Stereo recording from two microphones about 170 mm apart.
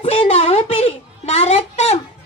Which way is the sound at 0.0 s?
35° left (ahead or behind).